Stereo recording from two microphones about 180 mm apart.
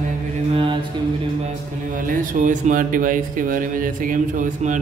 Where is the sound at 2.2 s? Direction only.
45° right (ahead or behind).